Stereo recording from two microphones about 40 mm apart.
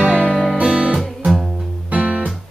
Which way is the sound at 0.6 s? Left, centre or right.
Right.